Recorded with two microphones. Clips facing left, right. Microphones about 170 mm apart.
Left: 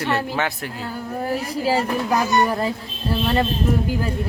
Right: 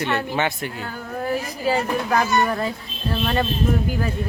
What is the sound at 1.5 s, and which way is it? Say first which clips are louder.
Speech: left 2 dB; 30° left (ahead or behind).